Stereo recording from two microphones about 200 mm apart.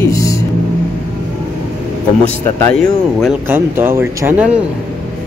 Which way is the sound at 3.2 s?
10° right (ahead or behind).